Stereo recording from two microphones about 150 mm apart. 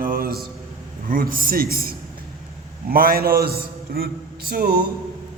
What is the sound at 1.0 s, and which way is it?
A man's voice, 75° right (ahead or behind).